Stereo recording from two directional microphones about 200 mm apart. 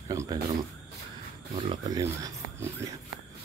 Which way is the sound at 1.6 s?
25° right (ahead or behind).